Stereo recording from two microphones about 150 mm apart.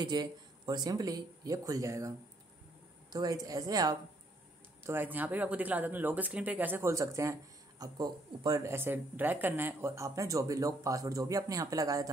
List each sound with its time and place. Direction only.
0.0 s speech: 30° right (ahead or behind)
4.8 s speech: 15° right (ahead or behind)